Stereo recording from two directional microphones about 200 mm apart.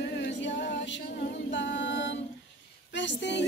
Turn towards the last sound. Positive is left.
turn(degrees=60)  # may be behind; listen again after turning